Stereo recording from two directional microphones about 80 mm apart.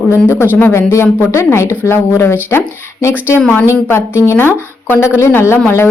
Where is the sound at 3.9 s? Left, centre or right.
Left.